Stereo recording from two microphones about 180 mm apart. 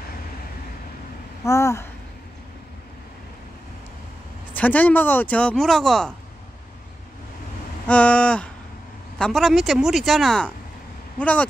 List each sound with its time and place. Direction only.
1.4 s speech: 15° left (ahead or behind)
4.6 s speech: 10° left (ahead or behind)
7.9 s speech: 5° left (ahead or behind)